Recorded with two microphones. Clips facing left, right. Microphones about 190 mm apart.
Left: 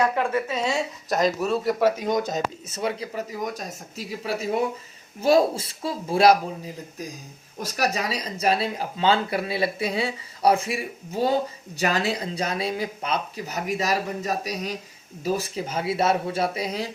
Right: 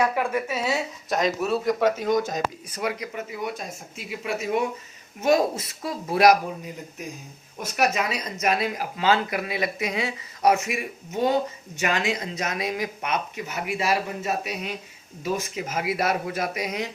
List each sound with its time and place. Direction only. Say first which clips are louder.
0.0 s speech: left 1 dB; 10° right (ahead or behind)
2.2 s speech: left 1 dB; 25° left (ahead or behind)